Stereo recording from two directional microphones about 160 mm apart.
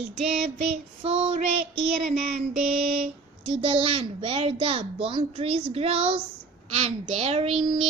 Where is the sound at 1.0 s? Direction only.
40° right (ahead or behind).